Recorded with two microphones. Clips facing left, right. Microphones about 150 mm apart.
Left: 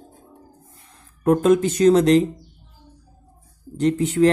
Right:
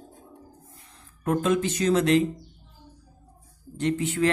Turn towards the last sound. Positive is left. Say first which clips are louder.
# left 7 dB
turn(degrees=40)  # may be behind; listen again after turning